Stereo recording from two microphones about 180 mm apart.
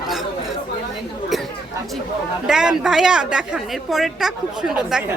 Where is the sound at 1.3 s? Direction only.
Centre (ahead or behind).